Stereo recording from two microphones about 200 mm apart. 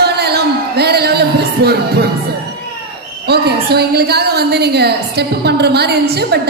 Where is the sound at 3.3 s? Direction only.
55° right (ahead or behind).